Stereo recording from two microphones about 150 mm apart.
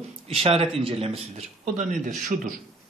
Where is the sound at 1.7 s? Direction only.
60° right (ahead or behind).